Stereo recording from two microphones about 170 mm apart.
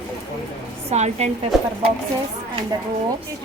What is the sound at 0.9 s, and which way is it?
Speech, 40° right (ahead or behind).